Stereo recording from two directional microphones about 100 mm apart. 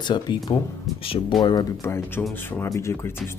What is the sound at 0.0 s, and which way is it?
Speech, 50° left (ahead or behind).